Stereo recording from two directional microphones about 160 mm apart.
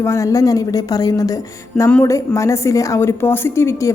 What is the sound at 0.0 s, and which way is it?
A woman's voice, 20° left (ahead or behind).